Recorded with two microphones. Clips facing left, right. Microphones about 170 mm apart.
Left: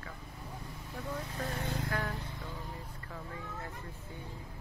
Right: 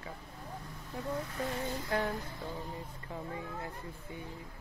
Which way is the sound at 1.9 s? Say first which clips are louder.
Right 6 dB; 25° right (ahead or behind).